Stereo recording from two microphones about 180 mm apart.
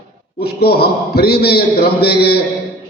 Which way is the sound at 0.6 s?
60° left (ahead or behind).